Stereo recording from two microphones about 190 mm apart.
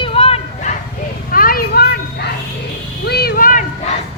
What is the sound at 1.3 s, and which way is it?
Children playing, 50° left (ahead or behind).